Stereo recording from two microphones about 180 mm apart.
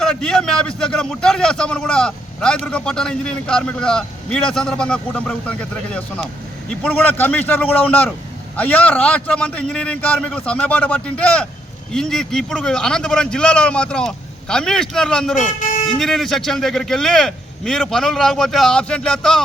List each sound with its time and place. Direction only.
0.0 s a man's voice: 5° left (ahead or behind)
15.4 s speech: 45° left (ahead or behind)
16.0 s a man's voice: centre (ahead or behind)